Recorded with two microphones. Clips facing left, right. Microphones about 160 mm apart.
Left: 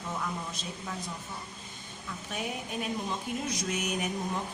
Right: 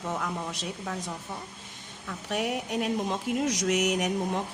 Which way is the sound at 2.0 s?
75° right (ahead or behind).